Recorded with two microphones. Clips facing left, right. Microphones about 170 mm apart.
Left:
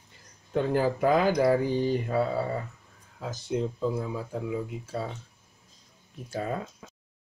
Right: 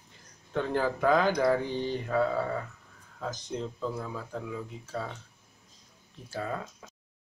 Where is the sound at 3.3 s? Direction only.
5° left (ahead or behind).